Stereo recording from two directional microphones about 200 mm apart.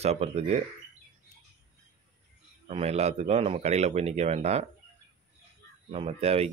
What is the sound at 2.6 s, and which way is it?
Speech, 30° right (ahead or behind).